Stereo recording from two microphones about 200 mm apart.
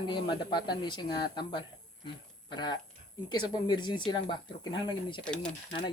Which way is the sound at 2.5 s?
20° left (ahead or behind).